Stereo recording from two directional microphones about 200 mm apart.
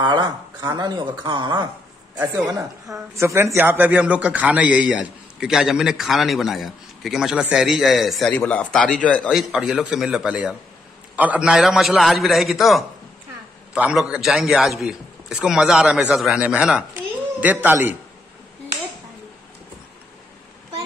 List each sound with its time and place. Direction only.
0.0 s a man's voice: 20° right (ahead or behind)